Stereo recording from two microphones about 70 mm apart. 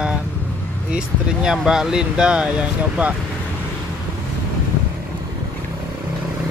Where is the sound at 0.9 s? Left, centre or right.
Centre.